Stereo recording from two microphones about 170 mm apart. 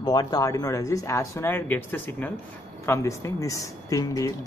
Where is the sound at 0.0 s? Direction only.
25° left (ahead or behind).